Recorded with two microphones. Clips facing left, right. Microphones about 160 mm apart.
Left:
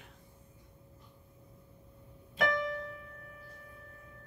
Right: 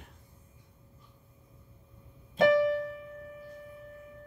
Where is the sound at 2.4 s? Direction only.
25° right (ahead or behind).